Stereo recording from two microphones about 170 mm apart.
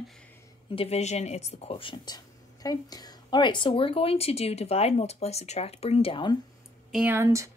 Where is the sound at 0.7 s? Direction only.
40° left (ahead or behind).